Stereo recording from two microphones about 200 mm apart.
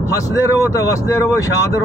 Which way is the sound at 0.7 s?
15° left (ahead or behind).